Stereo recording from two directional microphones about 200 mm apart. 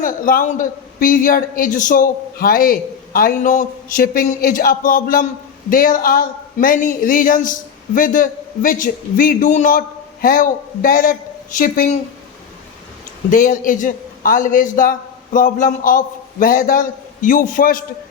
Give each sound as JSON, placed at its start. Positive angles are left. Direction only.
{"t": 0.0, "sound": "speech", "side_deg": 45}
{"t": 13.3, "sound": "speech", "side_deg": 40}